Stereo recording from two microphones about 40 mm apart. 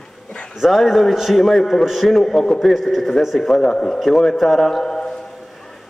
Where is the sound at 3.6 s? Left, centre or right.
Centre.